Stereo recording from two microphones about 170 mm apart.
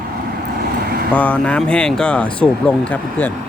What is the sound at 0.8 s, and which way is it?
Vehicle, 65° right (ahead or behind).